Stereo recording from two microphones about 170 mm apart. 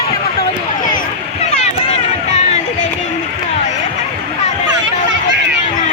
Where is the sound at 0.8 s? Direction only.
50° left (ahead or behind).